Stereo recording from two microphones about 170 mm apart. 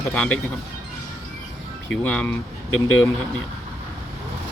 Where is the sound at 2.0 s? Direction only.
10° left (ahead or behind).